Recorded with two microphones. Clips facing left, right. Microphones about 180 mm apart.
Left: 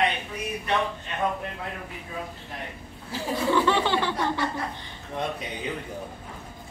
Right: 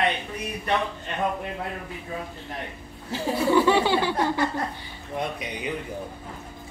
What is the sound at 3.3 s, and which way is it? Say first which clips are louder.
Chuckle: right 3 dB; 10° right (ahead or behind).